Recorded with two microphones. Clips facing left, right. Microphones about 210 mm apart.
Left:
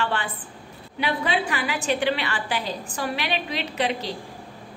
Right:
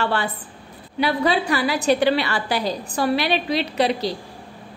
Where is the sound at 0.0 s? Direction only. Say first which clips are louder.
Right 4 dB; 40° right (ahead or behind).